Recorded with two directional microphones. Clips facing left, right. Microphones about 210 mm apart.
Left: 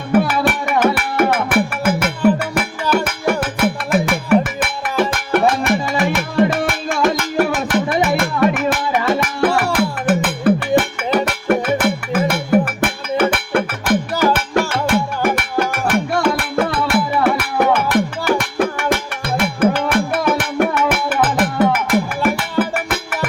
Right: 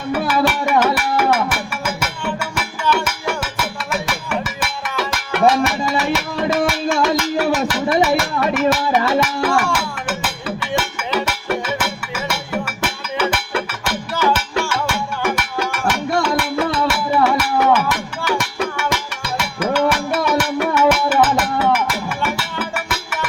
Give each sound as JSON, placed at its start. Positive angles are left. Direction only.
{"t": 0.1, "sound": "music", "side_deg": 55}